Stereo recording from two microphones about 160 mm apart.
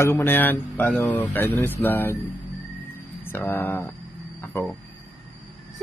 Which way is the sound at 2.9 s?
15° left (ahead or behind).